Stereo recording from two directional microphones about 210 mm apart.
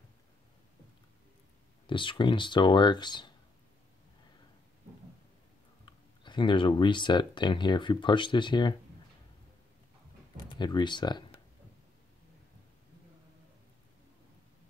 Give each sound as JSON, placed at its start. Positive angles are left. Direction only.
{"t": 1.9, "sound": "speech", "side_deg": 25}
{"t": 6.2, "sound": "speech", "side_deg": 20}
{"t": 10.3, "sound": "speech", "side_deg": 20}